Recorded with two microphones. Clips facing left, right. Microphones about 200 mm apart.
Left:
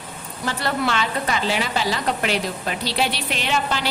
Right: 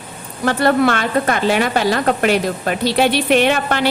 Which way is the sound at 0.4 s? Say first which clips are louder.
Right 9 dB; 55° right (ahead or behind).